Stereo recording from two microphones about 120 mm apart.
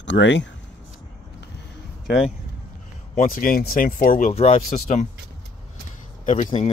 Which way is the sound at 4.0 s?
90° left.